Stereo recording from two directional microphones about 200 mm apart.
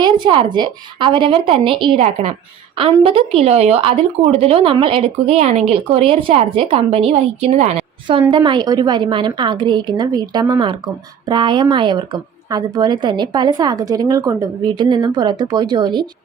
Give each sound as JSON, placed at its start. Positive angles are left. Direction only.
{"t": 0.0, "sound": "a woman's voice", "side_deg": -25}